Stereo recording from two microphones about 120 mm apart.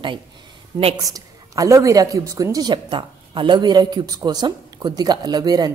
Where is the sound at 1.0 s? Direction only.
30° right (ahead or behind).